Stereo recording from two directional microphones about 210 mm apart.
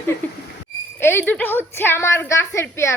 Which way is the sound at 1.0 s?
10° left (ahead or behind).